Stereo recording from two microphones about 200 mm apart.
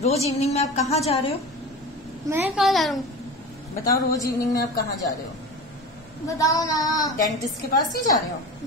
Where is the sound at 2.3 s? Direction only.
10° right (ahead or behind).